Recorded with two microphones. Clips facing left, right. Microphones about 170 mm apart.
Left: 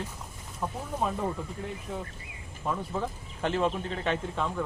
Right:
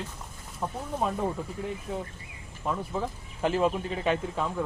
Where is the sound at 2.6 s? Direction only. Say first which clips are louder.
Right 1 dB; 5° right (ahead or behind).